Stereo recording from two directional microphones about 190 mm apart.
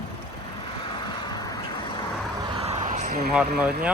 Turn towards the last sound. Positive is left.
turn(degrees=-5)  # may be behind; listen again after turning